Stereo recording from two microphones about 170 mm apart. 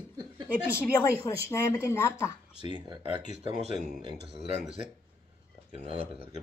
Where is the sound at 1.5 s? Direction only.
20° left (ahead or behind).